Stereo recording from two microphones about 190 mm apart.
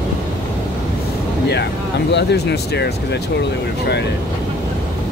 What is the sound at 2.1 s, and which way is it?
Speech, 60° left (ahead or behind).